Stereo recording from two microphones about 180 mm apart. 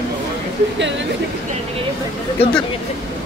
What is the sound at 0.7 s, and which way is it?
Speech, 90° right.